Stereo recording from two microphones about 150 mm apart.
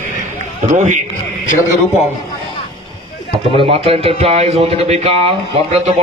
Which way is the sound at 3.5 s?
35° right (ahead or behind).